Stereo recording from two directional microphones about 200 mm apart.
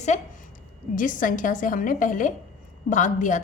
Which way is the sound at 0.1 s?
35° left (ahead or behind).